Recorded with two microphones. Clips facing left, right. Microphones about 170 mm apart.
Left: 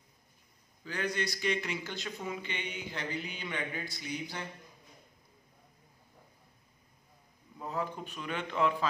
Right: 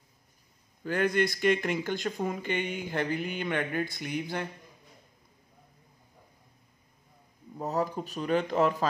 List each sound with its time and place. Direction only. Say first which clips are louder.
0.8 s speech: right 8 dB; 55° right (ahead or behind)
7.5 s a man's voice: right 6 dB; 40° right (ahead or behind)